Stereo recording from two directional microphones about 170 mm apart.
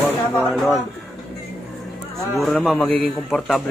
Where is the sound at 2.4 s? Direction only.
Centre (ahead or behind).